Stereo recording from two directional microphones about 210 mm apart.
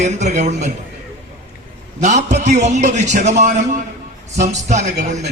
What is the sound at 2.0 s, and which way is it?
A man's voice, 35° right (ahead or behind).